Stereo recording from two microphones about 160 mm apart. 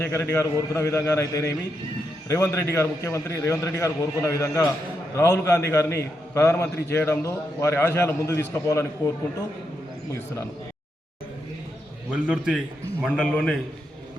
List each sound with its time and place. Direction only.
0.0 s a man's voice: 15° left (ahead or behind)
12.1 s a man's voice: 5° right (ahead or behind)
13.1 s a man's voice: 5° left (ahead or behind)